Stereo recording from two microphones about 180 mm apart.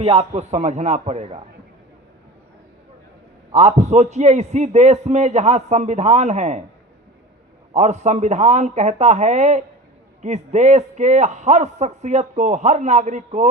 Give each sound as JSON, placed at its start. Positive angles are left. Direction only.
{"t": 0.0, "sound": "a man's voice", "side_deg": -35}
{"t": 3.5, "sound": "a man's voice", "side_deg": -40}
{"t": 7.7, "sound": "a man's voice", "side_deg": -40}